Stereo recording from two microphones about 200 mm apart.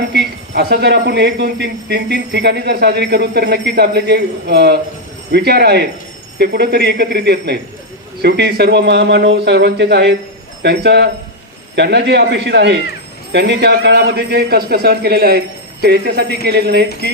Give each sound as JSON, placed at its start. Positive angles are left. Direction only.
{"t": 0.1, "sound": "speech", "side_deg": -55}